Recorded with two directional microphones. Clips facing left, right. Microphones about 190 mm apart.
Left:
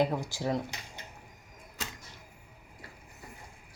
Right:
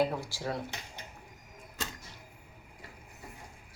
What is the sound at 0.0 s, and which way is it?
Speech, 20° left (ahead or behind).